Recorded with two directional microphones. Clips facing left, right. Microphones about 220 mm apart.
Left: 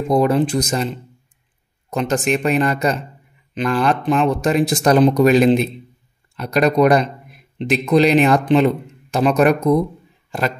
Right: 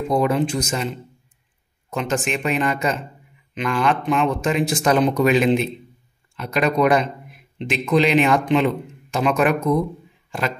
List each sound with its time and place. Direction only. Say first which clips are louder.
0.1 s speech: left 4 dB; 40° left (ahead or behind)
1.9 s speech: left 5 dB; 35° left (ahead or behind)